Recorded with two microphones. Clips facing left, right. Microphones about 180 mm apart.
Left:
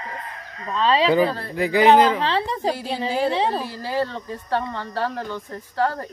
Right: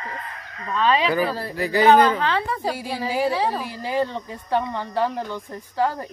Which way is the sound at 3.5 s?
15° right (ahead or behind).